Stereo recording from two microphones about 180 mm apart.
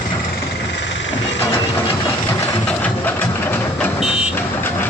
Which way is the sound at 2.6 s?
10° left (ahead or behind).